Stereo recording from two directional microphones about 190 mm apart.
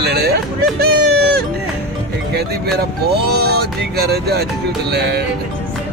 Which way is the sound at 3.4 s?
55° right (ahead or behind).